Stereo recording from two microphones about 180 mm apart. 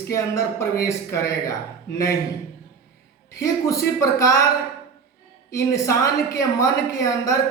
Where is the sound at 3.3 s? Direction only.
20° left (ahead or behind).